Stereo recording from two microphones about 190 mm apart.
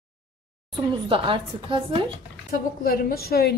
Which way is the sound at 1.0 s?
25° right (ahead or behind).